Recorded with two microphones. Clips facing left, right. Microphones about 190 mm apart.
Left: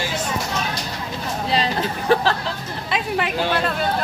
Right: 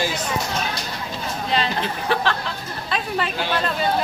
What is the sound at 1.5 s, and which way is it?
Speech, 35° left (ahead or behind).